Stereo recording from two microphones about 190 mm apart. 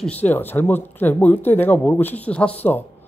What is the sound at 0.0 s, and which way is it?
Speech, 10° left (ahead or behind).